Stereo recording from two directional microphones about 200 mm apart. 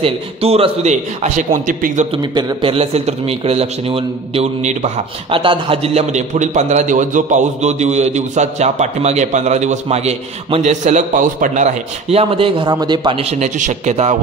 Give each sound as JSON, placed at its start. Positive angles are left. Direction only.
{"t": 0.0, "sound": "a man's voice", "side_deg": -30}
{"t": 2.3, "sound": "a man's voice", "side_deg": -25}